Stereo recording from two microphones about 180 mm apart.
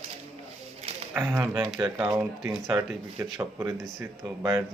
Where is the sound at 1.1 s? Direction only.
10° right (ahead or behind).